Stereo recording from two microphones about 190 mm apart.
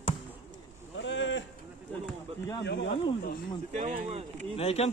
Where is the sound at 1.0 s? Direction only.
75° left (ahead or behind).